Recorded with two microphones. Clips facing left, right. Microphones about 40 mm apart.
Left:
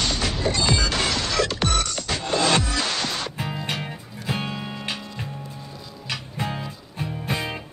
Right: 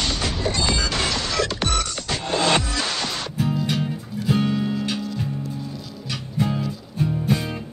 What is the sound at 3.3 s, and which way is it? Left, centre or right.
Music, left.